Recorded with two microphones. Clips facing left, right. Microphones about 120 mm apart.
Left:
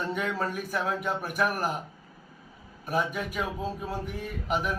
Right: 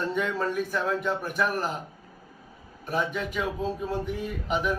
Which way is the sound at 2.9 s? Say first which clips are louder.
Right 1 dB; 10° left (ahead or behind).